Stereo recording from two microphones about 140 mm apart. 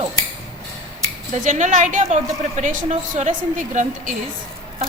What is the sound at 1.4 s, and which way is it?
A woman's voice, 65° right (ahead or behind).